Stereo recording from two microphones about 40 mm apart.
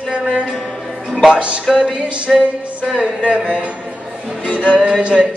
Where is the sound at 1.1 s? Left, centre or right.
Centre.